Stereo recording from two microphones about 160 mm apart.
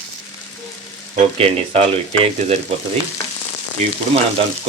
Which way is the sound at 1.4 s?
40° right (ahead or behind).